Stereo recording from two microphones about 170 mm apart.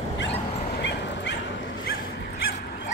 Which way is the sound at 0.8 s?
90° left.